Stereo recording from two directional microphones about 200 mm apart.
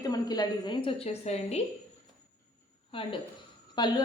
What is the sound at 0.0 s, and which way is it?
A woman's voice, 20° left (ahead or behind).